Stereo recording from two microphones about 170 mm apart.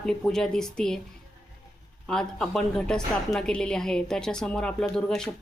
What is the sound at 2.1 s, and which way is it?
A woman's voice, 5° left (ahead or behind).